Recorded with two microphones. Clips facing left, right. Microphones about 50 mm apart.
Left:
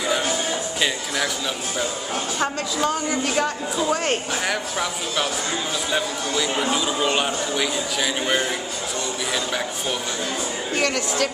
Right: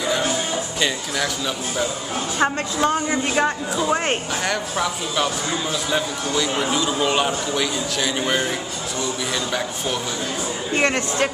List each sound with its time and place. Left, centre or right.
0.7 s speech: centre
2.3 s a woman's voice: right
4.5 s speech: centre
10.7 s a woman's voice: right